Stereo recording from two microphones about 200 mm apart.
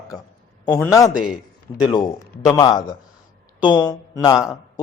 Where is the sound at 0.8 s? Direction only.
15° left (ahead or behind).